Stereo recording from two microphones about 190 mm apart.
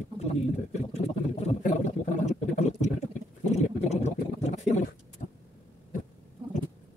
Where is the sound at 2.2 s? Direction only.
35° left (ahead or behind).